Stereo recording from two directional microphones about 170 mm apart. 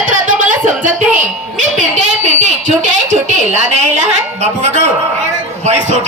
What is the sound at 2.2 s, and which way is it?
A woman's voice, 45° right (ahead or behind).